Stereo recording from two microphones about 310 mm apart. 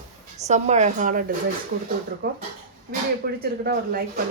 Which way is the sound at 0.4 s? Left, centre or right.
Right.